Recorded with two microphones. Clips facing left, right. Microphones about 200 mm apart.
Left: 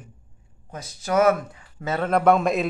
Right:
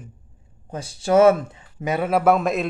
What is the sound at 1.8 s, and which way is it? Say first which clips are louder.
Speech: right 1 dB; 10° right (ahead or behind).